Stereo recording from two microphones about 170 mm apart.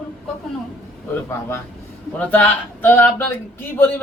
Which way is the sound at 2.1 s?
10° left (ahead or behind).